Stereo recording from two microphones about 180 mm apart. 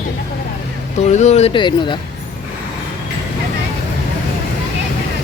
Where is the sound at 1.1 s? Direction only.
40° left (ahead or behind).